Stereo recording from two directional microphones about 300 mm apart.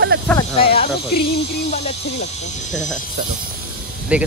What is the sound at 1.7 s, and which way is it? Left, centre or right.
Speech, left.